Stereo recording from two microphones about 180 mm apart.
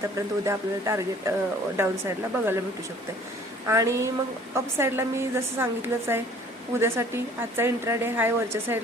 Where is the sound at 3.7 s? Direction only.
15° right (ahead or behind).